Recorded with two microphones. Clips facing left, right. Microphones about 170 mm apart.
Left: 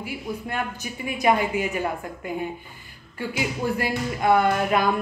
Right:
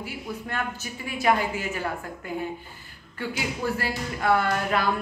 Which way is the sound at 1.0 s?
15° left (ahead or behind).